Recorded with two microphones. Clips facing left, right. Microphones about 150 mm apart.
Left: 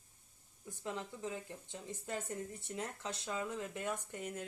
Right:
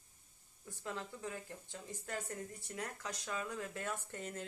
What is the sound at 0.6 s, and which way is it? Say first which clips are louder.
Speech: left 2 dB; 20° left (ahead or behind).